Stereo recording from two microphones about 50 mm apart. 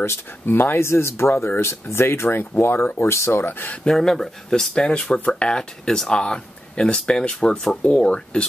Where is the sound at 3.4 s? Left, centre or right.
Left.